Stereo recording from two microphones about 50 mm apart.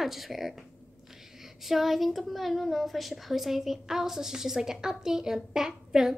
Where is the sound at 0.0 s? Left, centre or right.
Centre.